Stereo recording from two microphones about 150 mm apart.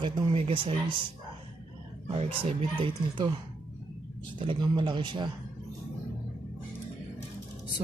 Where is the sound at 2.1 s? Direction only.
35° right (ahead or behind).